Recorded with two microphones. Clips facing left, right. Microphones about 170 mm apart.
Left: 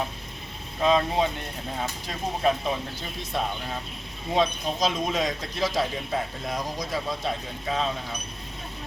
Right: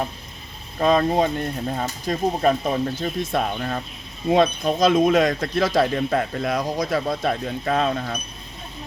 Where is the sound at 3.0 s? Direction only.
55° right (ahead or behind).